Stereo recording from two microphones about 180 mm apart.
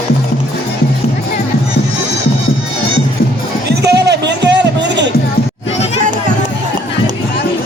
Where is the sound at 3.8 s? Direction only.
70° right (ahead or behind).